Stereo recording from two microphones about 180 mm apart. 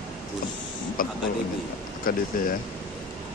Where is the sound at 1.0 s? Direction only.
50° left (ahead or behind).